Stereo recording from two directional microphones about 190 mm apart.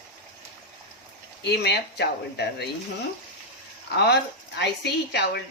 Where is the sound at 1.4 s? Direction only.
60° left (ahead or behind).